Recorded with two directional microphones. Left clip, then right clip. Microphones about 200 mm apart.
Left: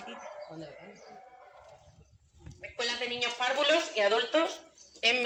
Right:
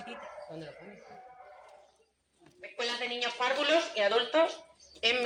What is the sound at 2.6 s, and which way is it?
A man's voice, 5° left (ahead or behind).